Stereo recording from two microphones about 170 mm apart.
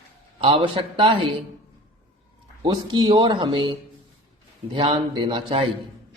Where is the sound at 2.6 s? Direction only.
25° right (ahead or behind).